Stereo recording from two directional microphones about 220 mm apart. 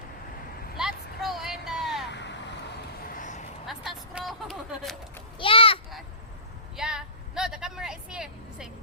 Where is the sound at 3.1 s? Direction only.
35° left (ahead or behind).